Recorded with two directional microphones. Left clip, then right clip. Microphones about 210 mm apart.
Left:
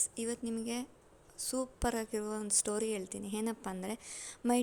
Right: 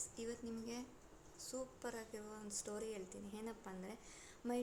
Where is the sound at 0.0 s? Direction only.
40° left (ahead or behind).